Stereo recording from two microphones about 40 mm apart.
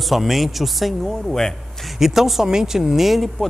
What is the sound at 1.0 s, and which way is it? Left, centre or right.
Speech, centre.